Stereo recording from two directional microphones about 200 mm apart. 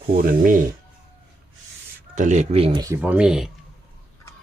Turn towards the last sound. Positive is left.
turn(degrees=0)  # may be behind; listen again after turning